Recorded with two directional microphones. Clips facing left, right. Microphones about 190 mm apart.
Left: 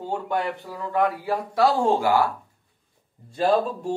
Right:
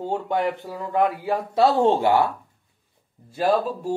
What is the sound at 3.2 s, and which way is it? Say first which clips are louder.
Speech: even; 5° right (ahead or behind).